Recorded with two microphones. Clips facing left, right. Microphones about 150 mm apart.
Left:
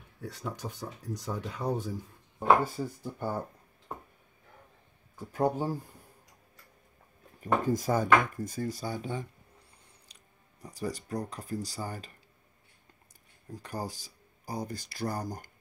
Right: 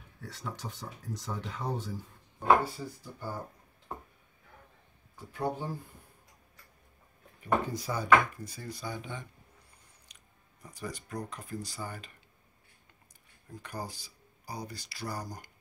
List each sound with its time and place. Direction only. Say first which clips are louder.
0.2 s speech: left 3 dB; 15° left (ahead or behind)
2.6 s speech: left 4 dB; 55° left (ahead or behind)
5.3 s speech: left 5 dB; 40° left (ahead or behind)
7.3 s speech: left 3 dB; 45° left (ahead or behind)
10.1 s chewing: left 2 dB; 30° left (ahead or behind)
10.6 s speech: left 5 dB; 35° left (ahead or behind)
13.6 s speech: left 3 dB; 40° left (ahead or behind)